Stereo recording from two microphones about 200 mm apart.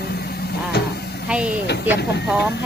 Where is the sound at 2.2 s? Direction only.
5° right (ahead or behind).